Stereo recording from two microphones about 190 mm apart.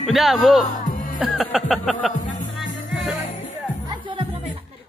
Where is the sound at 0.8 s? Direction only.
45° left (ahead or behind).